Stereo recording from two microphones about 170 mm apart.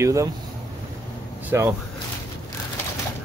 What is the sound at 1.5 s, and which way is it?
Speech, 15° right (ahead or behind).